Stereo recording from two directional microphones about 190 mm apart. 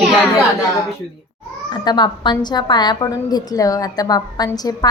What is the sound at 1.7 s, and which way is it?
A woman's voice, 25° left (ahead or behind).